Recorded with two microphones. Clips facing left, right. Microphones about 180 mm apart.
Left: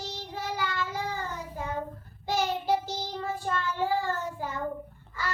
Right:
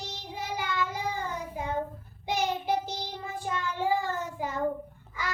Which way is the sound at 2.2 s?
20° right (ahead or behind).